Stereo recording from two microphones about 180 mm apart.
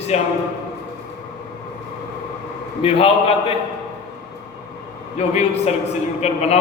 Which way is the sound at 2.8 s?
35° left (ahead or behind).